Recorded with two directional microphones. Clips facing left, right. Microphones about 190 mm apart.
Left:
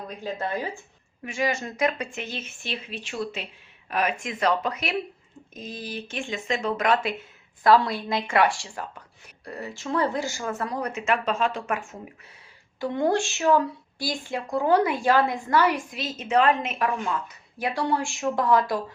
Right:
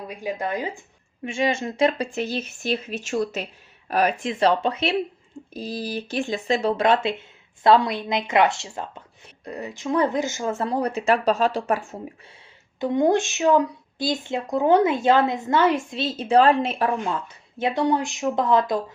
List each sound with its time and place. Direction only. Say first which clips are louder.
0.1 s speech: right 3 dB; 15° right (ahead or behind); by 11.9 s 35° right (ahead or behind)
12.8 s speech: right 4 dB; 20° right (ahead or behind)